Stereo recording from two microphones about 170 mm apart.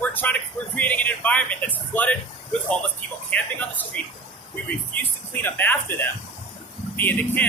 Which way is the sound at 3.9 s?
5° left (ahead or behind).